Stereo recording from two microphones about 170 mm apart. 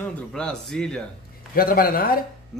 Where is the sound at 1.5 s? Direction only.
60° left (ahead or behind).